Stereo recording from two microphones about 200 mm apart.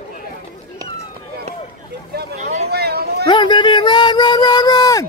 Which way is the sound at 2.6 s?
50° right (ahead or behind).